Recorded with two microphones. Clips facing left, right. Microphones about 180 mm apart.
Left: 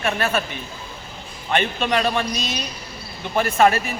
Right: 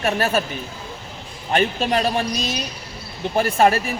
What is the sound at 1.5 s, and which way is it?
Speech, 35° right (ahead or behind).